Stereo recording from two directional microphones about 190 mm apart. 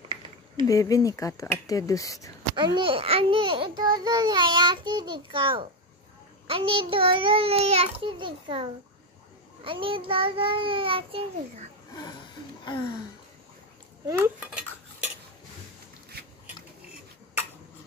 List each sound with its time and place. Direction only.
0.7 s speech: 15° left (ahead or behind)
2.5 s a child's voice: 25° right (ahead or behind)
11.9 s speech: 20° left (ahead or behind)
14.0 s cutlery: 10° right (ahead or behind)